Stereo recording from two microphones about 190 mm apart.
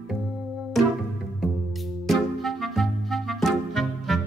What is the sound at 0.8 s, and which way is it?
Music, centre (ahead or behind).